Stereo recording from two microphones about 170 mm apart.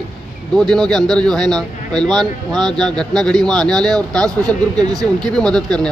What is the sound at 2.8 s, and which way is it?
A man's voice, 5° left (ahead or behind).